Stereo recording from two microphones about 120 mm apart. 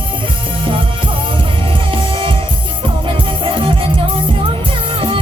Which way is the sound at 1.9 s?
45° right (ahead or behind).